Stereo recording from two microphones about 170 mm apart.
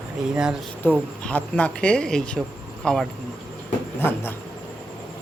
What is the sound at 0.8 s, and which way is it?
Speech, 10° left (ahead or behind).